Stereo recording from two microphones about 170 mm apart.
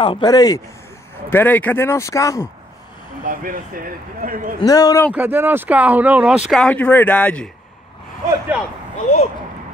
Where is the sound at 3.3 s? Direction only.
55° right (ahead or behind).